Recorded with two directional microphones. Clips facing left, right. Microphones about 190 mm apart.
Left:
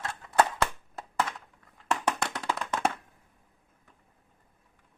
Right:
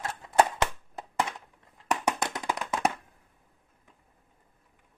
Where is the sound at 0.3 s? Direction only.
15° right (ahead or behind).